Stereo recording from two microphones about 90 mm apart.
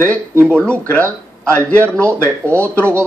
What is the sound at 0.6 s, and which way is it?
Speech, 15° left (ahead or behind).